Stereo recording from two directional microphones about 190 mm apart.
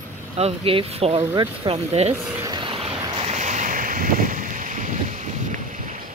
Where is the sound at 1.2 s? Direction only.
15° right (ahead or behind).